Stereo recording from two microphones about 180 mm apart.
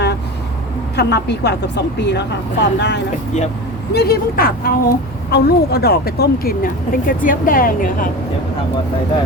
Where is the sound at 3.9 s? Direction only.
60° left (ahead or behind).